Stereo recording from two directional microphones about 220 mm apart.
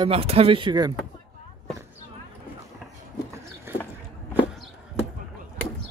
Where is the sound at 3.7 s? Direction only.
10° right (ahead or behind).